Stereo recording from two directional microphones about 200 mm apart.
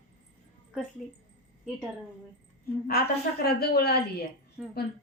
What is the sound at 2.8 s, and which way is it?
A woman's voice, 50° left (ahead or behind).